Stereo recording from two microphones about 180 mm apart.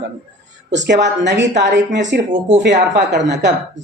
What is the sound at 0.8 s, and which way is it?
A man's voice, 75° right (ahead or behind).